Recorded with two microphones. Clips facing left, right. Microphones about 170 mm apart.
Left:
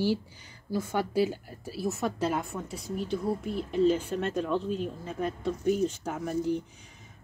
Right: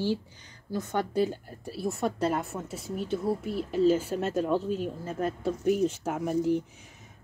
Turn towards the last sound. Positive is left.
turn(degrees=-5)  # may be behind; listen again after turning